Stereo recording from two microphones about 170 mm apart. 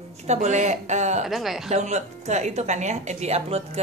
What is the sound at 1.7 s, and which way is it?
Speech, 40° right (ahead or behind).